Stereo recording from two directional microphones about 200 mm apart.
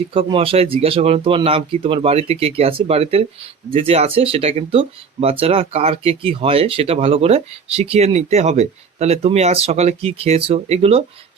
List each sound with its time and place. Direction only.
0.1 s speech: 25° right (ahead or behind)